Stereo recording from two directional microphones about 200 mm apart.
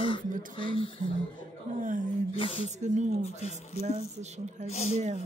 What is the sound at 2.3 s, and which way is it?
Speech, 25° left (ahead or behind).